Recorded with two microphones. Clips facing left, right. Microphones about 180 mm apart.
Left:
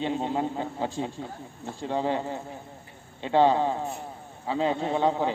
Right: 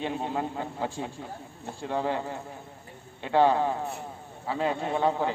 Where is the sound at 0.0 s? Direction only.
20° left (ahead or behind).